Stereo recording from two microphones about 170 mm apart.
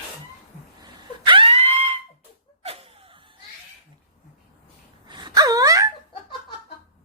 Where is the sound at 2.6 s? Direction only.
35° right (ahead or behind).